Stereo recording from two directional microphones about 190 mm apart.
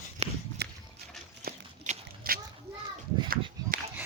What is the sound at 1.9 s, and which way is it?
Biting, 50° right (ahead or behind).